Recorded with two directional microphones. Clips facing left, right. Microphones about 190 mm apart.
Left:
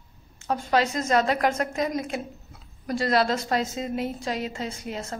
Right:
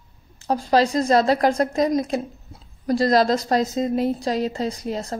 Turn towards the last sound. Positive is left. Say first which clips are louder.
# right 6 dB
turn(degrees=-35)  # may be behind; listen again after turning